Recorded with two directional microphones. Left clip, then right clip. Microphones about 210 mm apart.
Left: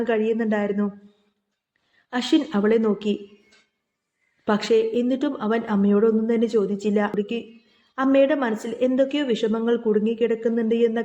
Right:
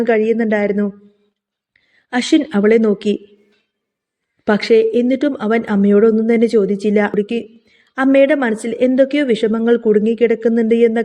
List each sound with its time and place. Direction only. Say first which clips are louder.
0.0 s speech: right 8 dB; 30° right (ahead or behind)
2.0 s speech: right 7 dB; 30° right (ahead or behind)
4.4 s speech: right 8 dB; 30° right (ahead or behind)